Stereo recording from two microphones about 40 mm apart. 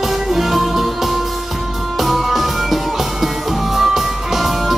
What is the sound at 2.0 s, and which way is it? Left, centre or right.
Music, centre.